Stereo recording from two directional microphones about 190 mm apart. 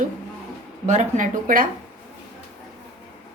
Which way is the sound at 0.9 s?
40° right (ahead or behind).